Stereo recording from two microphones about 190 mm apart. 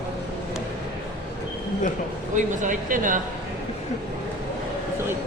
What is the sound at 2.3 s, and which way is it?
Speech, 45° right (ahead or behind).